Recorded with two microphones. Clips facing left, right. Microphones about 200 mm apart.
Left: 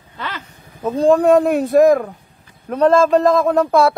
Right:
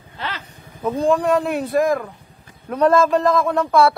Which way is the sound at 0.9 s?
35° left (ahead or behind).